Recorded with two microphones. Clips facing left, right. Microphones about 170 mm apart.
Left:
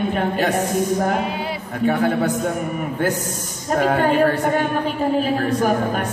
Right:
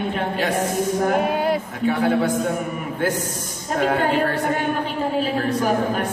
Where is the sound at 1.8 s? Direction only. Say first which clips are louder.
Left 1 dB; 50° left (ahead or behind).